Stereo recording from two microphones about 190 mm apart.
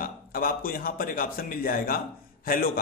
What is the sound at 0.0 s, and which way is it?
A man's voice, 50° left (ahead or behind).